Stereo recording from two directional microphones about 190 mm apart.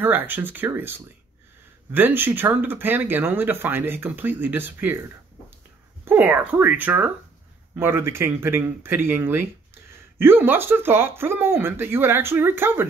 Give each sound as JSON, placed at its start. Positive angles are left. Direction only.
{"t": 0.0, "sound": "speech", "side_deg": -10}
{"t": 6.0, "sound": "speech", "side_deg": -10}